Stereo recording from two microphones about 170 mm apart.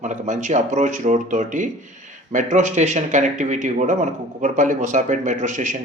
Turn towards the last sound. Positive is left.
turn(degrees=-45)  # may be behind; listen again after turning